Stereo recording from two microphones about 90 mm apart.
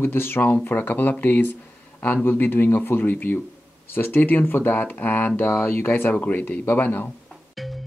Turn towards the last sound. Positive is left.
turn(degrees=0)  # may be behind; listen again after turning